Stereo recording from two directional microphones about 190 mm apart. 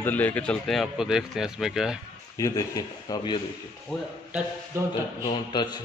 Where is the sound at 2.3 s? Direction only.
15° left (ahead or behind).